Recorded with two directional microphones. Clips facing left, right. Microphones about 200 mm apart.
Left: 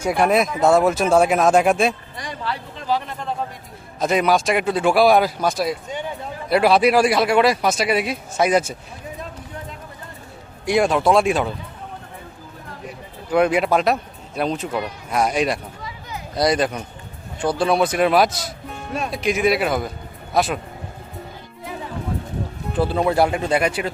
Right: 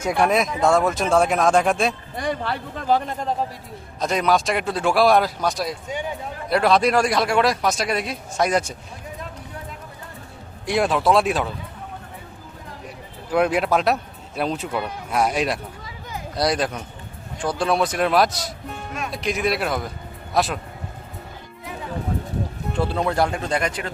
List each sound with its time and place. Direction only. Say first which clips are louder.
0.0 s speech: left 2 dB; 5° left (ahead or behind)
2.1 s speech: right 4 dB; 55° right (ahead or behind)
4.0 s speech: left 2 dB; 5° left (ahead or behind)
10.7 s speech: left 2 dB; centre (ahead or behind)
13.3 s speech: left 2 dB; centre (ahead or behind)
22.7 s speech: left 4 dB; 5° left (ahead or behind)